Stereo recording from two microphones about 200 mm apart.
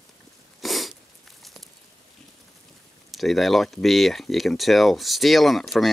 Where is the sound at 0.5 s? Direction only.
Centre (ahead or behind).